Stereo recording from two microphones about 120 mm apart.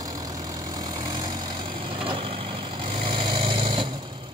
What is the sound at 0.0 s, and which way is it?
Vehicle, 30° right (ahead or behind).